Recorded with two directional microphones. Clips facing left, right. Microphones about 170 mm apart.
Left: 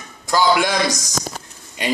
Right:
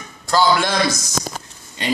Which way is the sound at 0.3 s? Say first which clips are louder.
Even; 15° left (ahead or behind).